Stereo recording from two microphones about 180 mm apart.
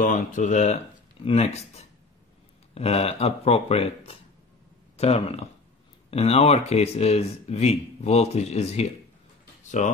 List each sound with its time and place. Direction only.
0.0 s speech: 45° left (ahead or behind)
2.7 s speech: 35° left (ahead or behind)